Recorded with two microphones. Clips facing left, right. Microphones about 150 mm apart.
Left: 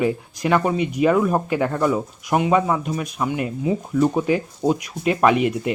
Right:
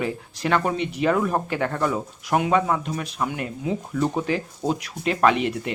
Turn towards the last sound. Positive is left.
turn(degrees=10)  # may be behind; listen again after turning